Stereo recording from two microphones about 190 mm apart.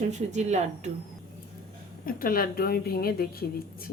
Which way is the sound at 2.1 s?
50° left (ahead or behind).